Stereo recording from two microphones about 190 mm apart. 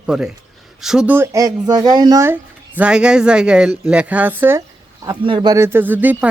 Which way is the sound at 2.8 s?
5° right (ahead or behind).